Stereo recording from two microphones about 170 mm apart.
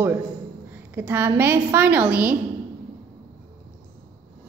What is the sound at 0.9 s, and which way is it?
Speech, 10° right (ahead or behind).